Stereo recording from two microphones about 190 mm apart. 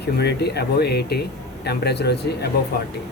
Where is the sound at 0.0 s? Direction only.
60° left (ahead or behind).